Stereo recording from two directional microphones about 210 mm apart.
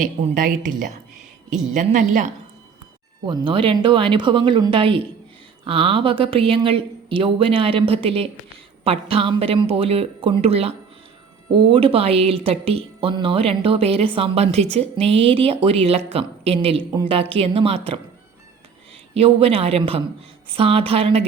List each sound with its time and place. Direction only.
0.0 s a woman's voice: 40° right (ahead or behind)
3.2 s speech: 25° right (ahead or behind)
19.1 s speech: 30° right (ahead or behind)